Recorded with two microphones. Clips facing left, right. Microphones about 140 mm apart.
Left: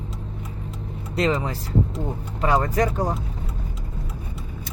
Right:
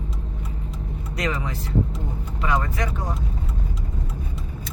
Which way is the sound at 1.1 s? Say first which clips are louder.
Left 5 dB; 30° left (ahead or behind).